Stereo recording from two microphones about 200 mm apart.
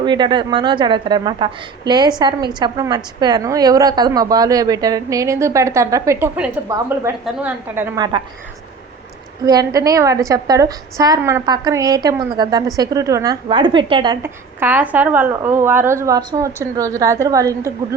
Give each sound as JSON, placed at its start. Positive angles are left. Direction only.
{"t": 0.0, "sound": "a woman's voice", "side_deg": -20}
{"t": 9.5, "sound": "a woman's voice", "side_deg": -20}
{"t": 14.2, "sound": "a woman's voice", "side_deg": -10}